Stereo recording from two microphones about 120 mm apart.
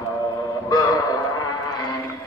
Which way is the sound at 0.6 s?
30° left (ahead or behind).